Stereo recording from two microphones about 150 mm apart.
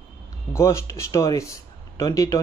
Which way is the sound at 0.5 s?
20° left (ahead or behind).